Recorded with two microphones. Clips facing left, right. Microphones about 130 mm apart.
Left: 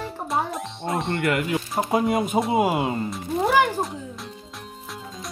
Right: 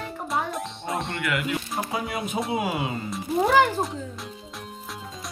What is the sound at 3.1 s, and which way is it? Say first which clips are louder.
Music: even; centre (ahead or behind).